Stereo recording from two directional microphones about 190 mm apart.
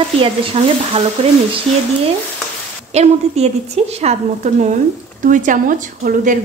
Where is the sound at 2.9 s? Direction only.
35° right (ahead or behind).